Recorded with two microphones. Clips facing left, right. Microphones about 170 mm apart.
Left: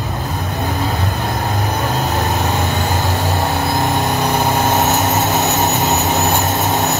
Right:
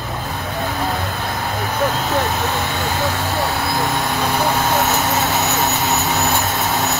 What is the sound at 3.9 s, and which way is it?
Vehicle, 20° left (ahead or behind).